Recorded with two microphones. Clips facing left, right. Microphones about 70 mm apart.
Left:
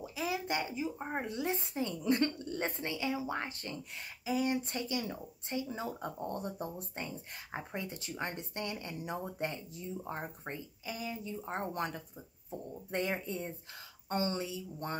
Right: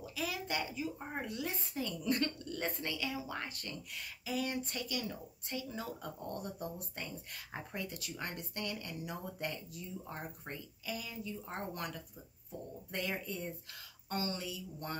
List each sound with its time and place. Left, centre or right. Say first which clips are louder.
0.0 s speech: left 3 dB; left